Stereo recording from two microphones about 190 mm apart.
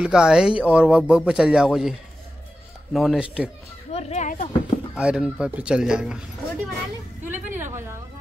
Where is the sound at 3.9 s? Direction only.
40° left (ahead or behind).